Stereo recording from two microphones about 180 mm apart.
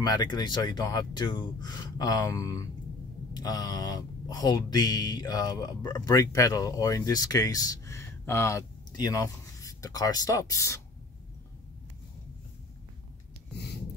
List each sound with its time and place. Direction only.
0.0 s speech: 25° left (ahead or behind)